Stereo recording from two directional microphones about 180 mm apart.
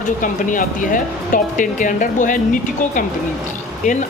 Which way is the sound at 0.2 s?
50° left (ahead or behind).